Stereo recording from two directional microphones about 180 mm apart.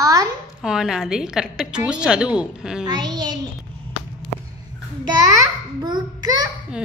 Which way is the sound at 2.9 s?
20° right (ahead or behind).